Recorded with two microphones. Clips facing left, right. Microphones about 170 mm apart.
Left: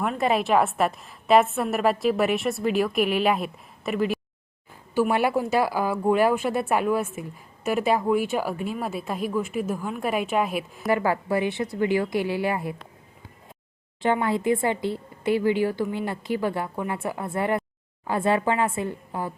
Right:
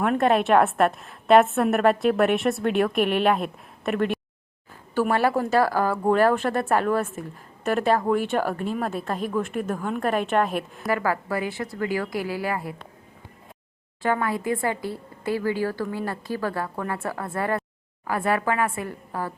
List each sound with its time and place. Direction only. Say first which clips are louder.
0.0 s a woman's voice: right 3 dB; centre (ahead or behind)
10.8 s speech: left 2 dB; 25° left (ahead or behind)
14.0 s speech: left 2 dB; 25° left (ahead or behind)